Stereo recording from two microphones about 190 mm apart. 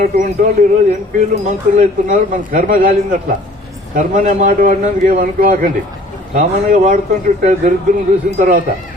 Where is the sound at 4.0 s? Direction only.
40° right (ahead or behind).